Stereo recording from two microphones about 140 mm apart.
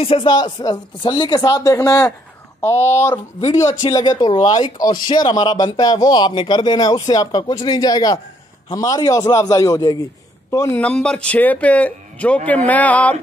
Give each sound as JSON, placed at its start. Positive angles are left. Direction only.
{"t": 0.0, "sound": "a man's voice", "side_deg": 40}
{"t": 3.8, "sound": "a man's voice", "side_deg": 30}
{"t": 10.8, "sound": "a man's voice", "side_deg": 10}